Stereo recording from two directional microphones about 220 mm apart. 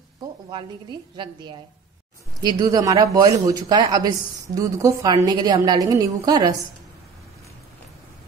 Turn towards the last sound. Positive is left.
turn(degrees=-15)  # may be behind; listen again after turning